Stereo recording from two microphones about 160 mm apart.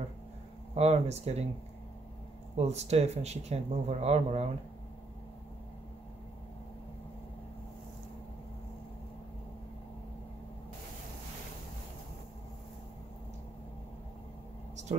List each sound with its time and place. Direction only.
0.7 s speech: 40° right (ahead or behind)
2.5 s speech: 40° right (ahead or behind)